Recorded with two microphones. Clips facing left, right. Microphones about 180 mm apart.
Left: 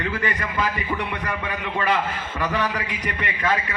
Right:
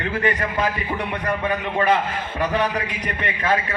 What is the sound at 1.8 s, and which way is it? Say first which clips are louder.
Speech: right 3 dB; 55° right (ahead or behind).